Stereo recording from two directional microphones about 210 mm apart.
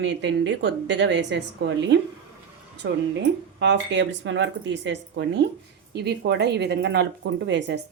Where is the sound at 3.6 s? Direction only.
55° right (ahead or behind).